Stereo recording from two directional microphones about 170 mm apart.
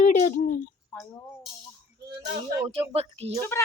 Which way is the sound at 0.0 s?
50° left (ahead or behind).